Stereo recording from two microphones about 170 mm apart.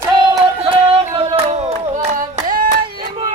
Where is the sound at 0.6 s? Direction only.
30° right (ahead or behind); by 2.7 s 50° right (ahead or behind).